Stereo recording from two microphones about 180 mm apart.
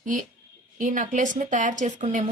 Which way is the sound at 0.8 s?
45° right (ahead or behind).